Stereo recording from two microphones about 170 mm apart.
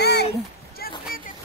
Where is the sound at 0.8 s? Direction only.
60° left (ahead or behind).